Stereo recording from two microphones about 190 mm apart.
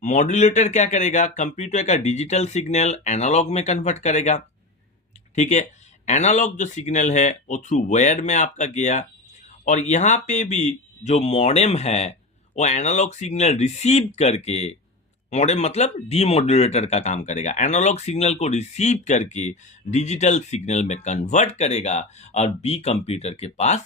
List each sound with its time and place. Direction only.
0.0 s speech: 40° left (ahead or behind)